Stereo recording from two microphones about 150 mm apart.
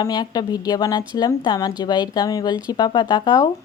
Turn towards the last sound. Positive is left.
turn(degrees=30)  # may be behind; listen again after turning